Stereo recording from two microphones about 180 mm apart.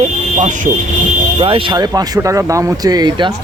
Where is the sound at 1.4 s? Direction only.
30° right (ahead or behind).